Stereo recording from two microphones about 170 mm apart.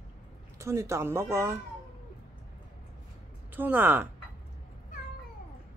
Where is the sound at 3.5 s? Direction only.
10° right (ahead or behind).